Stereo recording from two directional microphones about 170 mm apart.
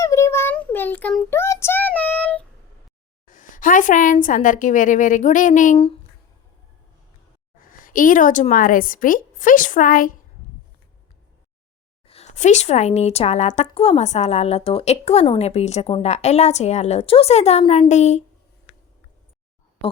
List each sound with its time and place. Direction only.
0.0 s child singing: 15° left (ahead or behind)
3.2 s a woman's voice: 50° left (ahead or behind)
7.7 s a woman's voice: 55° left (ahead or behind)
12.0 s a woman's voice: 35° left (ahead or behind)